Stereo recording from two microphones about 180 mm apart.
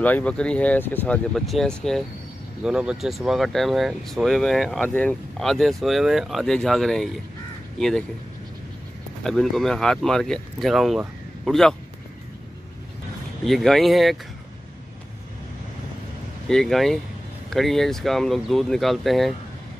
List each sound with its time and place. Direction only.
0.0 s speech: 5° left (ahead or behind)
9.2 s speech: centre (ahead or behind)
13.4 s speech: centre (ahead or behind)
16.4 s speech: centre (ahead or behind)